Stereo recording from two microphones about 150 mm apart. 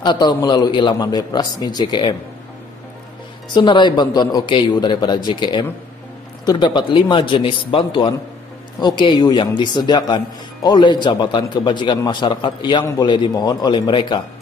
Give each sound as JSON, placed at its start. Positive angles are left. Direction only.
{"t": 0.0, "sound": "speech", "side_deg": 30}
{"t": 3.5, "sound": "a man's voice", "side_deg": 30}